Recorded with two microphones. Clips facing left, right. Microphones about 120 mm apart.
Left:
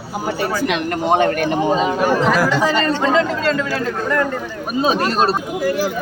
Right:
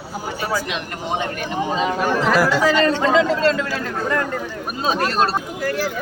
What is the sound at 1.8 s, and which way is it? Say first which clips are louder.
Speech: left 3 dB; 10° left (ahead or behind).